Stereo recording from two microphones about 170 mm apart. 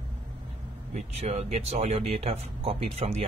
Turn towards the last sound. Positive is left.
turn(degrees=-40)  # may be behind; listen again after turning